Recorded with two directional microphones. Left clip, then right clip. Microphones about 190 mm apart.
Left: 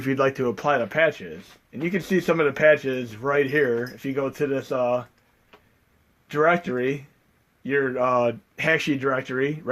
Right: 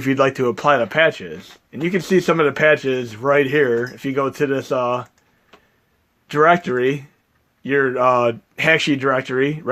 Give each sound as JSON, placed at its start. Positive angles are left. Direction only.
{"t": 0.0, "sound": "speech", "side_deg": -30}
{"t": 6.2, "sound": "speech", "side_deg": -45}